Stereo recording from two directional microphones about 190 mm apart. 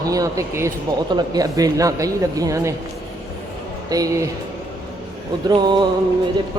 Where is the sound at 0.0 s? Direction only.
20° right (ahead or behind).